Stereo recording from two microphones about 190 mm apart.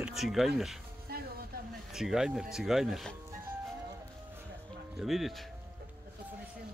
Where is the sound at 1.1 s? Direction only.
55° right (ahead or behind).